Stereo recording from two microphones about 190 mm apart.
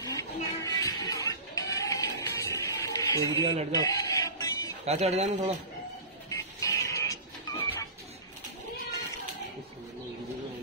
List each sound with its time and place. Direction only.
0.0 s music: 20° left (ahead or behind)
4.8 s speech: 35° right (ahead or behind)
6.6 s music: 15° left (ahead or behind)